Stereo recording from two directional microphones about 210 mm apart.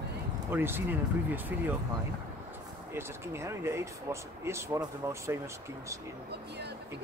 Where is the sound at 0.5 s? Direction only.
10° right (ahead or behind).